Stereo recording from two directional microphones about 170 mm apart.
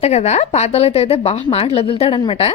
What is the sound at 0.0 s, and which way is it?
Speech, 40° left (ahead or behind).